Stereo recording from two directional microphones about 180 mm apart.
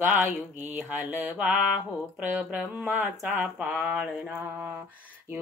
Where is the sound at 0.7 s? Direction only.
10° right (ahead or behind).